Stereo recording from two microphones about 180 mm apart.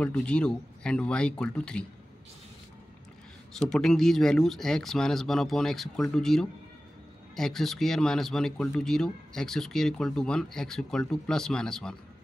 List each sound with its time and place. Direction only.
0.0 s speech: 5° left (ahead or behind)
3.5 s speech: centre (ahead or behind)